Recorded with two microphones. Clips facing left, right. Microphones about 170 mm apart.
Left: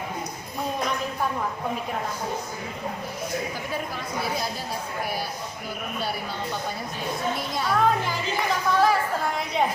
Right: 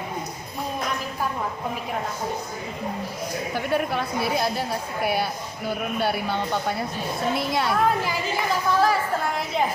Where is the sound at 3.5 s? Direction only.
65° right (ahead or behind).